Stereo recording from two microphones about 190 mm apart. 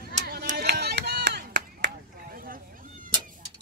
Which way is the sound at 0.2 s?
50° right (ahead or behind).